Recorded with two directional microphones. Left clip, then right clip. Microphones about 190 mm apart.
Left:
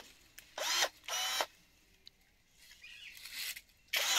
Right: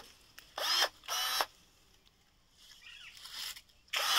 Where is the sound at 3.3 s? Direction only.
5° left (ahead or behind).